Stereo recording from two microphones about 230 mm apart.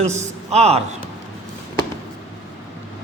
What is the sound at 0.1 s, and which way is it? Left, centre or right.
Speech, right.